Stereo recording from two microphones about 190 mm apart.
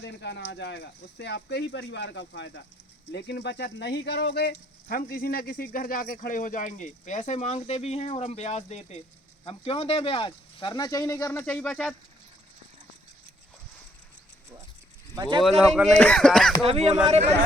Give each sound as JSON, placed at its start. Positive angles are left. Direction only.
{"t": 0.0, "sound": "speech", "side_deg": 65}
{"t": 15.1, "sound": "speech", "side_deg": -20}
{"t": 15.4, "sound": "speech", "side_deg": 0}
{"t": 16.6, "sound": "speech", "side_deg": -35}